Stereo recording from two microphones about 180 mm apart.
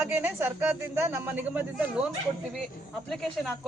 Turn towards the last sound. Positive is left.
turn(degrees=0)  # may be behind; listen again after turning